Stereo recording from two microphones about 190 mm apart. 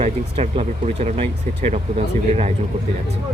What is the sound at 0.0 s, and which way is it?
Speech, 30° right (ahead or behind).